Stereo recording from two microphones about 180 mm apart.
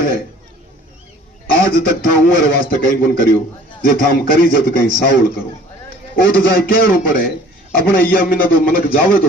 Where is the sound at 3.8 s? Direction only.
55° left (ahead or behind).